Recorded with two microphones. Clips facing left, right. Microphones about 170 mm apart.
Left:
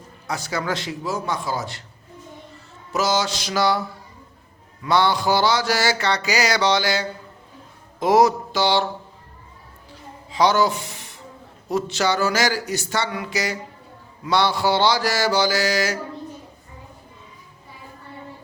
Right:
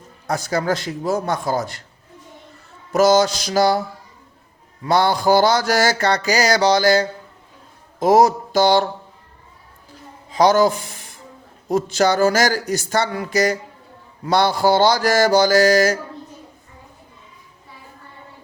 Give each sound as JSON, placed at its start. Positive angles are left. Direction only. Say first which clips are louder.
{"t": 0.3, "sound": "mantra", "louder": "right 5 dB", "side_deg": -45}
{"t": 2.9, "sound": "mantra", "louder": "right 8 dB", "side_deg": -50}
{"t": 7.9, "sound": "speech", "louder": "right 3 dB", "side_deg": -40}
{"t": 10.3, "sound": "speech", "louder": "right 4 dB", "side_deg": -45}
{"t": 11.7, "sound": "mantra", "louder": "right 4 dB", "side_deg": -45}